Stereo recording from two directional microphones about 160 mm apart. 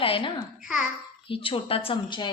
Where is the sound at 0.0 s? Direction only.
35° left (ahead or behind).